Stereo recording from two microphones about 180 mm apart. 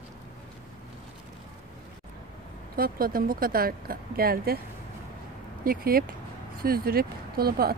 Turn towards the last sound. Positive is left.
turn(degrees=-60)  # may be behind; listen again after turning